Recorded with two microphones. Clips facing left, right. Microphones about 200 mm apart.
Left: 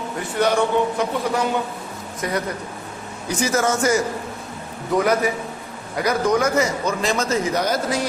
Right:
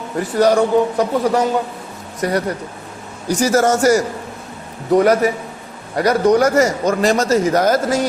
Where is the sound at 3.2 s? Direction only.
40° right (ahead or behind).